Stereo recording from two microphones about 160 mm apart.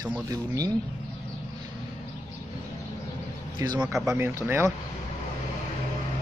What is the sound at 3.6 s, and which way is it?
Speech, 25° right (ahead or behind).